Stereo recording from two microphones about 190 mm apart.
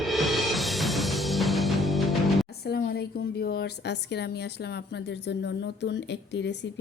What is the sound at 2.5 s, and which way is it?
A woman's voice, 60° left (ahead or behind).